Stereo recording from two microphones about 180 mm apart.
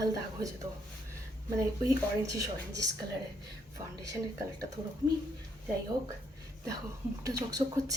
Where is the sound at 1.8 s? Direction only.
20° right (ahead or behind).